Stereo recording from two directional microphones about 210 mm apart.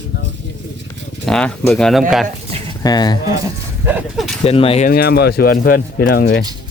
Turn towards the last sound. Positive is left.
turn(degrees=45)  # may be behind; listen again after turning